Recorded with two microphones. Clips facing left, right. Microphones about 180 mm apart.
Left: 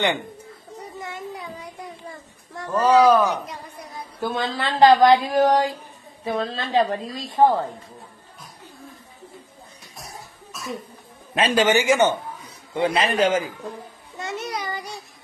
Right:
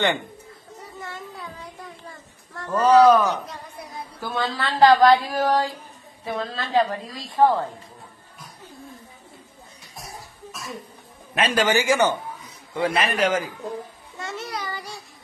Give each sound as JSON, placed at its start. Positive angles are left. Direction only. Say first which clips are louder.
{"t": 1.0, "sound": "child singing", "louder": "left 3 dB", "side_deg": 15}
{"t": 2.5, "sound": "speech", "louder": "right 1 dB", "side_deg": 15}
{"t": 11.3, "sound": "speech", "louder": "left 2 dB", "side_deg": 25}
{"t": 14.1, "sound": "child singing", "louder": "left 3 dB", "side_deg": 20}